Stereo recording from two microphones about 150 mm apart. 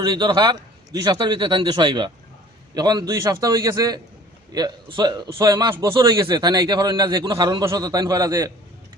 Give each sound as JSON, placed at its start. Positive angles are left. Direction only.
{"t": 0.0, "sound": "a man's voice", "side_deg": -30}